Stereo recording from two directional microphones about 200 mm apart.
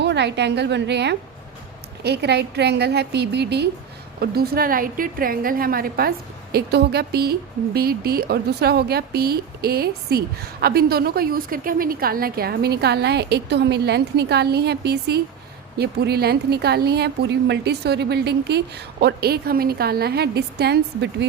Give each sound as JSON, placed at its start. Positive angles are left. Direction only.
{"t": 0.0, "sound": "a woman's voice", "side_deg": -60}